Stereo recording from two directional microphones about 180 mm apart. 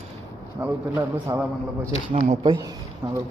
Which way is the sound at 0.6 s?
10° right (ahead or behind).